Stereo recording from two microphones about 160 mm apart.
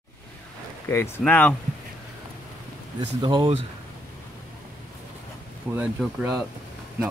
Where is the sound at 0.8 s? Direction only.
15° left (ahead or behind).